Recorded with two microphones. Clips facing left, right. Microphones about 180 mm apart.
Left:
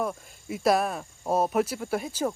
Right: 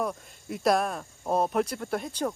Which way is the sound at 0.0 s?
Centre (ahead or behind).